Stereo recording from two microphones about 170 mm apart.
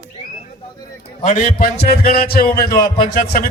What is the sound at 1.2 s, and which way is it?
A man's voice, 50° left (ahead or behind).